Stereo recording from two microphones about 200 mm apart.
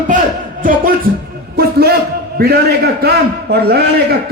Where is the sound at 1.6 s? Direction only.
50° right (ahead or behind).